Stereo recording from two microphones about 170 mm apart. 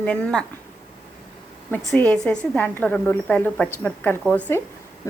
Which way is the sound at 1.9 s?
5° left (ahead or behind).